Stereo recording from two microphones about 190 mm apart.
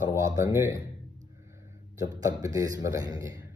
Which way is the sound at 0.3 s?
15° right (ahead or behind).